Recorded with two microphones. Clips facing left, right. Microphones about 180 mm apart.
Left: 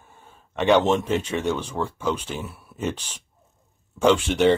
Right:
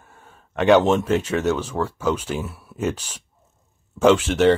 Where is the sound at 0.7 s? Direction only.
5° right (ahead or behind).